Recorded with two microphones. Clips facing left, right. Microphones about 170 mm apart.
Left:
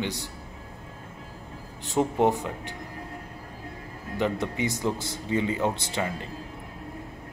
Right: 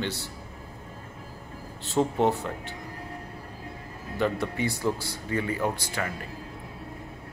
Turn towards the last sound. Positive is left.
turn(degrees=25)  # may be behind; listen again after turning